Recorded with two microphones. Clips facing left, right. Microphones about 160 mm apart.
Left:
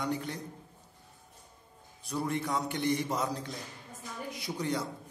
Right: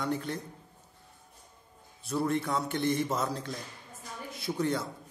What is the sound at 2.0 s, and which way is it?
A man's voice, 15° left (ahead or behind).